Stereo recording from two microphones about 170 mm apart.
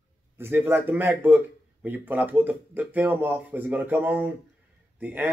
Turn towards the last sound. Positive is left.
turn(degrees=-10)  # may be behind; listen again after turning